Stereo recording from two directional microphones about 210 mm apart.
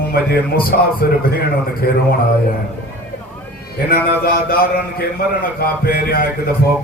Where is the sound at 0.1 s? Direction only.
45° left (ahead or behind).